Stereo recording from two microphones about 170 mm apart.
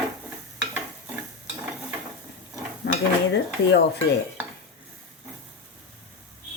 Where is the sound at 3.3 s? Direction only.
80° left.